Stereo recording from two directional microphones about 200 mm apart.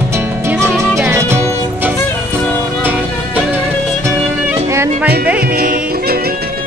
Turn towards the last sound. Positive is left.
turn(degrees=-50)  # may be behind; listen again after turning